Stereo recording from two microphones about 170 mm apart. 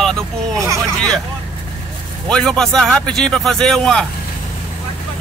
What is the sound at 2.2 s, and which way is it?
Speech, 5° left (ahead or behind).